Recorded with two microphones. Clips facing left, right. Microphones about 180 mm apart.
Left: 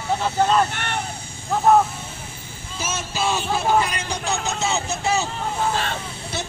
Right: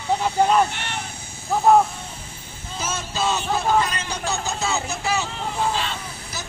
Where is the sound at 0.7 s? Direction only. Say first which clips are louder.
Left 4 dB; 55° left (ahead or behind).